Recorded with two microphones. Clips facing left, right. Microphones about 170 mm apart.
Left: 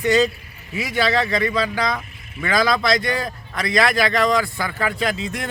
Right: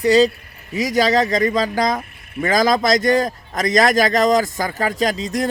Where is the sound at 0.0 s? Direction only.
35° right (ahead or behind).